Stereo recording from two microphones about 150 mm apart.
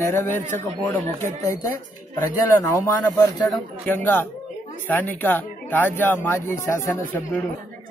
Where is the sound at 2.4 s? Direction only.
15° left (ahead or behind).